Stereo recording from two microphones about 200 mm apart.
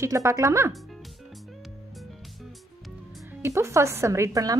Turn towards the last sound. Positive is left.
turn(degrees=-15)  # may be behind; listen again after turning